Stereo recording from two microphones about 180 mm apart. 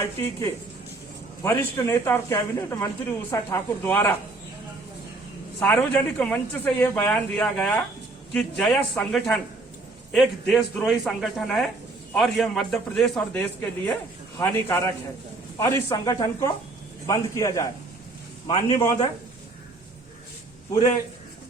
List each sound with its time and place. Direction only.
0.0 s a man's voice: 15° left (ahead or behind)
5.5 s a man's voice: 10° left (ahead or behind)
18.4 s a man's voice: 35° left (ahead or behind)
18.8 s a man's voice: 15° left (ahead or behind)